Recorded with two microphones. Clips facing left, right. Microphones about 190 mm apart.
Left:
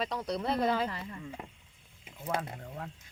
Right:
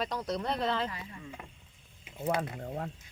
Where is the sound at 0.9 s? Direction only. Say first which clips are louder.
Left 3 dB; 35° left (ahead or behind).